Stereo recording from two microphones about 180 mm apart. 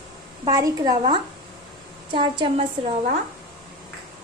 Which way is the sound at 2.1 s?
30° right (ahead or behind).